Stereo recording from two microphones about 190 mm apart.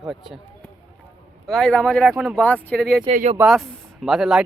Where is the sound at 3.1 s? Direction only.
40° right (ahead or behind).